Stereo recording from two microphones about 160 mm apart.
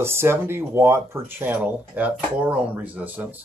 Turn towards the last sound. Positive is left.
turn(degrees=-10)  # may be behind; listen again after turning